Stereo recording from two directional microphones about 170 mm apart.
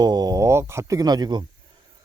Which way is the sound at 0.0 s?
25° right (ahead or behind).